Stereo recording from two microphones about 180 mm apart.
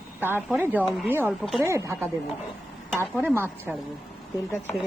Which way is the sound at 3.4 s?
10° right (ahead or behind).